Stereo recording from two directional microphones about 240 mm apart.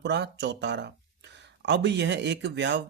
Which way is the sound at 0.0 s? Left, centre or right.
Right.